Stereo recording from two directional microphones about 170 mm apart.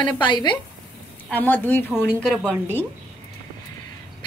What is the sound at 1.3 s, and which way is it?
Speech, 10° left (ahead or behind).